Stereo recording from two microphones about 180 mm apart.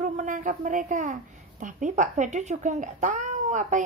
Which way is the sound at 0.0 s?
45° right (ahead or behind).